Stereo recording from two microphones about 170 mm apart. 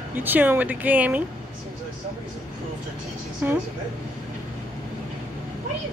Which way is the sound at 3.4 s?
10° right (ahead or behind).